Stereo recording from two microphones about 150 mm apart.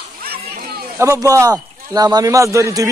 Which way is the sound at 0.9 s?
20° right (ahead or behind).